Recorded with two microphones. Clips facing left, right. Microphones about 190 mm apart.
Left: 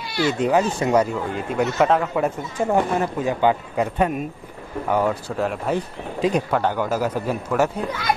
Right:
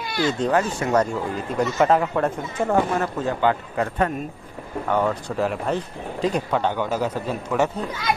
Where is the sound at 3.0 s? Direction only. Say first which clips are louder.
Left 2 dB; 15° left (ahead or behind).